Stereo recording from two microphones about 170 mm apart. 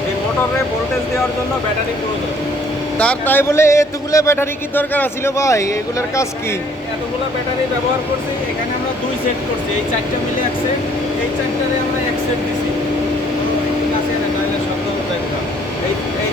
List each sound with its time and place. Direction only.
3.0 s speech: 10° left (ahead or behind)